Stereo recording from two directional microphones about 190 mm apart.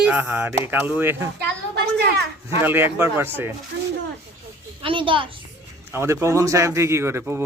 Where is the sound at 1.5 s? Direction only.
60° right (ahead or behind).